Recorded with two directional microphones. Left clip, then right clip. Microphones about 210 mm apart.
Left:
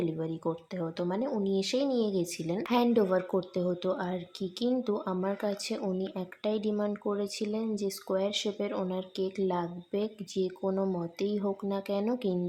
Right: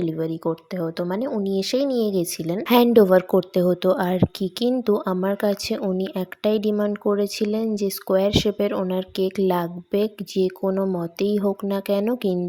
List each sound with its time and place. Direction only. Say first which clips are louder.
0.0 s speech: right 8 dB; 30° right (ahead or behind)